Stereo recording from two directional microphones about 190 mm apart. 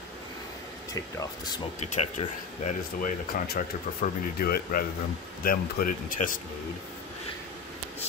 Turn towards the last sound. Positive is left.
turn(degrees=45)  # may be behind; listen again after turning